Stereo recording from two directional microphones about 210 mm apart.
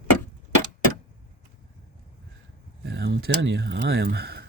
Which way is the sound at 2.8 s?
55° right (ahead or behind).